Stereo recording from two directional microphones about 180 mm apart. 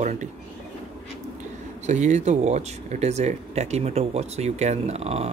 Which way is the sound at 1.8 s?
40° right (ahead or behind).